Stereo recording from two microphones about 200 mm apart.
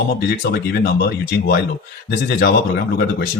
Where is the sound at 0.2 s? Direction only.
55° left (ahead or behind).